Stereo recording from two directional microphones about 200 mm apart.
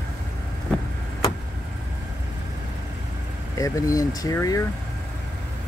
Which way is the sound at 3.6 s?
15° left (ahead or behind).